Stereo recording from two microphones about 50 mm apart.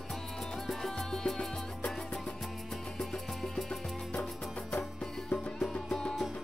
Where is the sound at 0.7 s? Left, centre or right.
Centre.